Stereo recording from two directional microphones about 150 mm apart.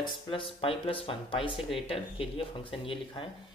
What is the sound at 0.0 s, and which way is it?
Speech, 35° left (ahead or behind).